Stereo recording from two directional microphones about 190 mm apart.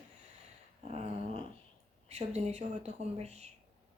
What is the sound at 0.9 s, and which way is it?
Dog, 35° right (ahead or behind).